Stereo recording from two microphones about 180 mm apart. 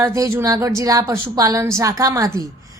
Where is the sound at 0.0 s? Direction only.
15° right (ahead or behind).